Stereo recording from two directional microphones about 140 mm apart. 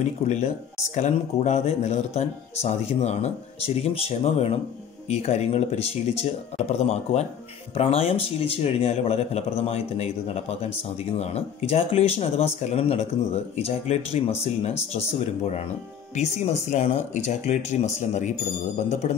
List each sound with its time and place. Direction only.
0.9 s speech: 55° left (ahead or behind)
16.7 s speech: 50° left (ahead or behind)